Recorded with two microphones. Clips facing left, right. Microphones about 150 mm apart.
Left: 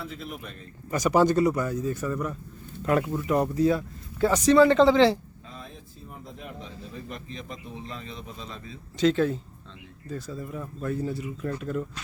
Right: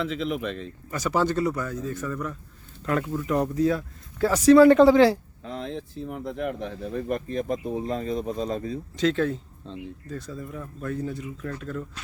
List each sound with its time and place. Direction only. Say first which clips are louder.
0.0 s a man's voice: right 10 dB; 90° right
0.9 s speech: left 4 dB; 15° left (ahead or behind); by 5.1 s 10° right (ahead or behind)
5.5 s speech: right 12 dB; 75° right (ahead or behind); by 8.8 s 45° right (ahead or behind)
9.0 s speech: left 2 dB; centre (ahead or behind)